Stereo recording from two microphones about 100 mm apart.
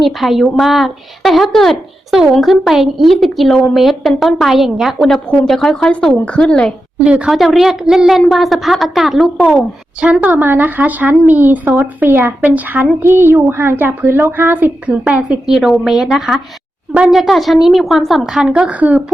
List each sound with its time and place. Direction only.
0.0 s a woman's voice: centre (ahead or behind)
7.0 s a woman's voice: 10° right (ahead or behind)
10.2 s a woman's voice: 15° right (ahead or behind)
17.2 s a woman's voice: centre (ahead or behind)